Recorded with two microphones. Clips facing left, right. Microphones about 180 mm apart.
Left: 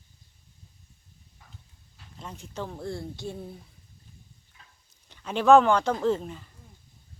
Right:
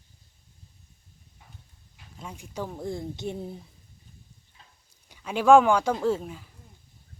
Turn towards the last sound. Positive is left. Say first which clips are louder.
# even
turn(degrees=-5)  # may be behind; listen again after turning